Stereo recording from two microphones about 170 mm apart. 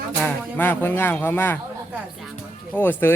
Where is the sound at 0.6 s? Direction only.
10° left (ahead or behind).